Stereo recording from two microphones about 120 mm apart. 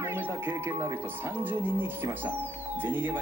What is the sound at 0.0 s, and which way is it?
Speech, 20° right (ahead or behind).